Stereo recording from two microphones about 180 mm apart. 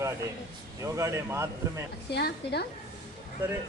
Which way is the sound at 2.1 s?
65° left (ahead or behind).